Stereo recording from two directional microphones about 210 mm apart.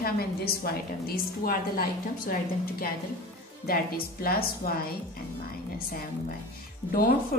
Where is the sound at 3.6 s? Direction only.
45° left (ahead or behind).